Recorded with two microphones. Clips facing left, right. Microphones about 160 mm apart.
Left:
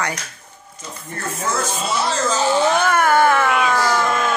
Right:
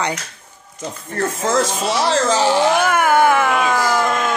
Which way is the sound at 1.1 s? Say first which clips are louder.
Right 6 dB; 90° right.